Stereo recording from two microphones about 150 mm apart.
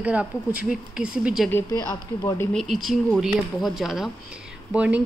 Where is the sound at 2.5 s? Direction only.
Centre (ahead or behind).